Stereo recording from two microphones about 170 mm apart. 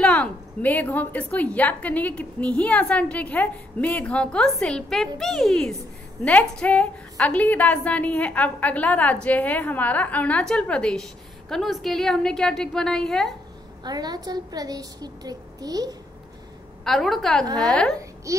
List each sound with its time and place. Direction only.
0.0 s a woman's voice: 10° left (ahead or behind)
13.8 s a woman's voice: 25° right (ahead or behind)
16.8 s a woman's voice: centre (ahead or behind)